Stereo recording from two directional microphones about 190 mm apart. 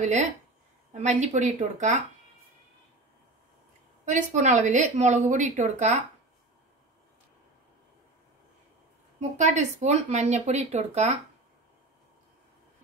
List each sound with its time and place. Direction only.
0.0 s speech: 40° right (ahead or behind)
4.0 s speech: 40° right (ahead or behind)
9.4 s speech: 40° right (ahead or behind)